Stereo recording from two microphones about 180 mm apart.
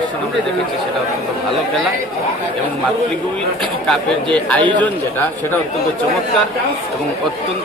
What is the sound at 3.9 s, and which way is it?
Speech, 5° left (ahead or behind).